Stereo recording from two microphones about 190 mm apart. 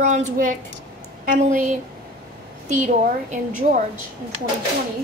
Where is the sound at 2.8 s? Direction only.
40° right (ahead or behind).